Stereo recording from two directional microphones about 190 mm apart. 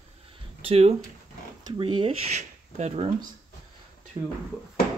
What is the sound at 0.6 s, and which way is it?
Speech, 30° right (ahead or behind).